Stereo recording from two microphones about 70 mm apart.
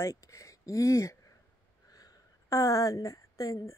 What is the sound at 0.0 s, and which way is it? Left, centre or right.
Speech, left.